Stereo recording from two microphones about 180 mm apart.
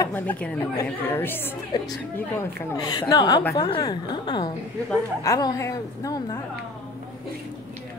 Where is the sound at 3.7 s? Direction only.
25° left (ahead or behind).